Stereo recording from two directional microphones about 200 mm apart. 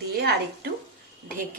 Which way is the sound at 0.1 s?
55° right (ahead or behind).